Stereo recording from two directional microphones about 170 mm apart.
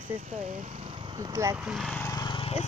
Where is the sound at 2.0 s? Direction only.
20° left (ahead or behind).